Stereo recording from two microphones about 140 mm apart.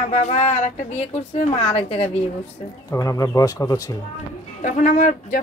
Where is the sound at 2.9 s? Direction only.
25° left (ahead or behind).